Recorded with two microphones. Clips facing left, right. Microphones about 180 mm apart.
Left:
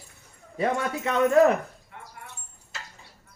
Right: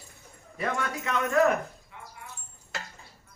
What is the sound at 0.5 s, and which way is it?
Speech, 30° left (ahead or behind).